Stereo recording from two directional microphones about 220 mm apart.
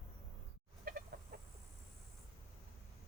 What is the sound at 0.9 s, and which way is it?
Chicken, 45° right (ahead or behind).